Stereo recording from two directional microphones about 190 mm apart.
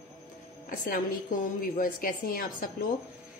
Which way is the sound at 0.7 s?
45° left (ahead or behind).